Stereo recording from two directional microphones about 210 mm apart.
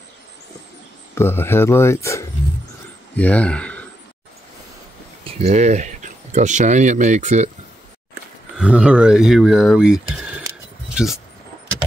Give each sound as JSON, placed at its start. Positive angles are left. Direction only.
{"t": 1.1, "sound": "speech", "side_deg": 10}
{"t": 5.2, "sound": "speech", "side_deg": -30}
{"t": 8.5, "sound": "speech", "side_deg": -5}